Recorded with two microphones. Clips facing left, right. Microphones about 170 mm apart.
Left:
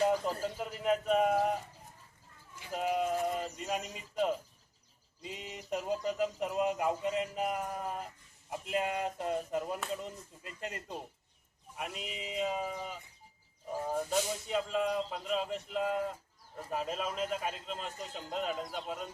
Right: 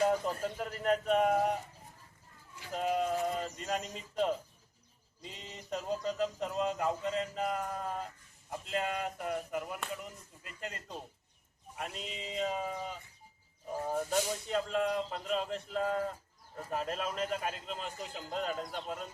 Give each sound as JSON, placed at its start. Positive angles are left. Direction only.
{"t": 0.1, "sound": "speech", "side_deg": 5}
{"t": 2.7, "sound": "speech", "side_deg": 5}
{"t": 11.8, "sound": "a man's voice", "side_deg": 5}